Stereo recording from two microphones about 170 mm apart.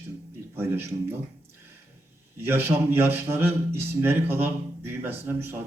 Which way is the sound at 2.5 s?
15° right (ahead or behind).